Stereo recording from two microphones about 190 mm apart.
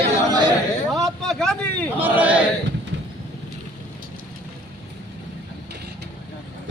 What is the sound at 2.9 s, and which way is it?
Vehicle, 70° right (ahead or behind).